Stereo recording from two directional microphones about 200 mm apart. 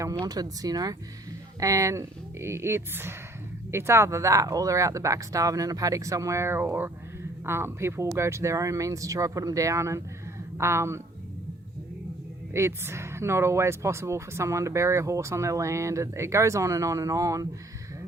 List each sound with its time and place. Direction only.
0.0 s speech: 15° right (ahead or behind)
12.5 s speech: 15° right (ahead or behind)